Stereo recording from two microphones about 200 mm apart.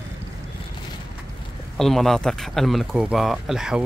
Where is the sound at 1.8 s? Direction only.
Centre (ahead or behind).